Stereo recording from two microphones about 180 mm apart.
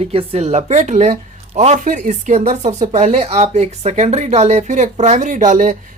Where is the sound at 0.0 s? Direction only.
35° right (ahead or behind).